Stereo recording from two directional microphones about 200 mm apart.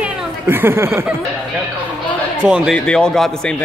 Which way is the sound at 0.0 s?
10° right (ahead or behind).